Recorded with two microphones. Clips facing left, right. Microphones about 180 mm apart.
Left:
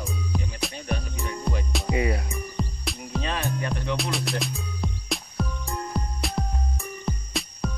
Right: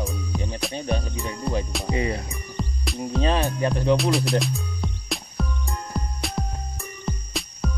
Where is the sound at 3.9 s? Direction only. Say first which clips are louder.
Right 6 dB; centre (ahead or behind).